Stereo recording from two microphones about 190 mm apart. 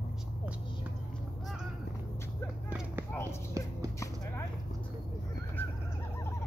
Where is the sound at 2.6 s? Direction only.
10° right (ahead or behind).